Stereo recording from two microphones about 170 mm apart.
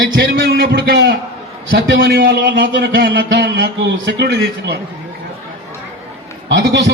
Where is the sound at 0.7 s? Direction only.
90° right.